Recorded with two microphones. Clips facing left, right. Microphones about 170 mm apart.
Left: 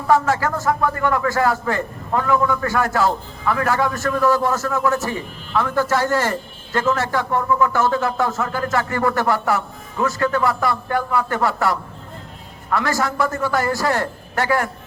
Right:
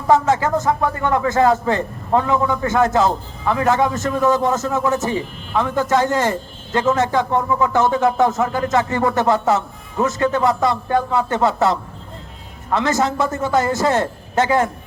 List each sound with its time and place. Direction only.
0.1 s a man's voice: 20° right (ahead or behind)